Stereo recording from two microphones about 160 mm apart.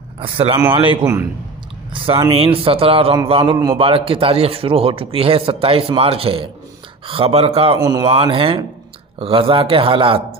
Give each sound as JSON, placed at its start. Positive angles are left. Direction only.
{"t": 0.2, "sound": "a man's voice", "side_deg": -35}
{"t": 1.0, "sound": "a man's voice", "side_deg": -15}
{"t": 2.0, "sound": "a man's voice", "side_deg": -35}
{"t": 7.8, "sound": "speech", "side_deg": -25}
{"t": 8.1, "sound": "a man's voice", "side_deg": -35}